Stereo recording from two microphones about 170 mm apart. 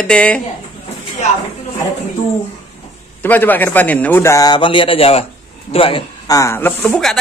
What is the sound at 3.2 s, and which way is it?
A man's voice, 10° left (ahead or behind).